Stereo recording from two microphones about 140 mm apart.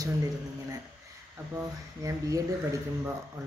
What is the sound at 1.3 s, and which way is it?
Speech, 20° right (ahead or behind).